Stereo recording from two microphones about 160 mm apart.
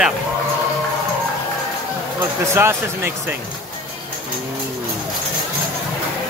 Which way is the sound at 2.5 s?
15° right (ahead or behind).